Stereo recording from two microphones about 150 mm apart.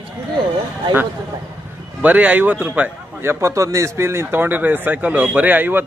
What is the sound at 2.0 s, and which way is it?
A man's voice, 10° right (ahead or behind).